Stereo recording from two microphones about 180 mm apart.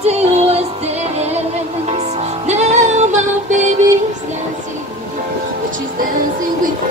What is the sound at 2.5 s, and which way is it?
Music, 40° right (ahead or behind).